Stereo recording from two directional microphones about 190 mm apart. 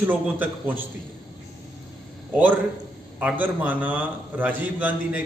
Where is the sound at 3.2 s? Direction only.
10° right (ahead or behind).